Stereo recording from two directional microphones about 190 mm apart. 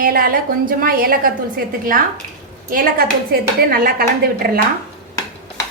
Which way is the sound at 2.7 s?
50° right (ahead or behind).